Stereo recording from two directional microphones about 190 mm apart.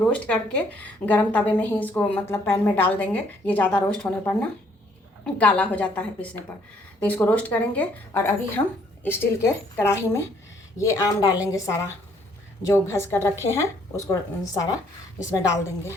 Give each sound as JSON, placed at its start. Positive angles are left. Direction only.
{"t": 0.1, "sound": "a woman's voice", "side_deg": 5}